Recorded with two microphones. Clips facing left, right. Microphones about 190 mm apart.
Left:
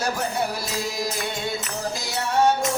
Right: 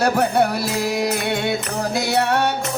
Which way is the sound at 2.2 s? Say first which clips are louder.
Even; 70° right (ahead or behind).